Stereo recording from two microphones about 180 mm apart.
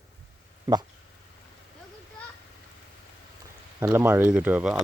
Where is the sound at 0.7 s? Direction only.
20° right (ahead or behind).